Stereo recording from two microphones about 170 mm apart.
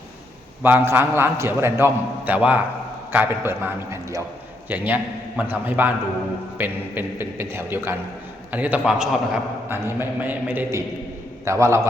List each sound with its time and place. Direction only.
0.6 s a man's voice: 10° right (ahead or behind)
4.7 s a man's voice: 10° right (ahead or behind)